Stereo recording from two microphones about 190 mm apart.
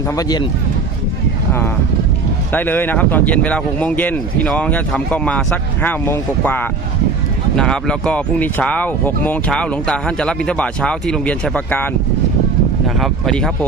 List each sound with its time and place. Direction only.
0.2 s speech: 20° left (ahead or behind)
2.5 s speech: 10° left (ahead or behind)
13.0 s speech: centre (ahead or behind)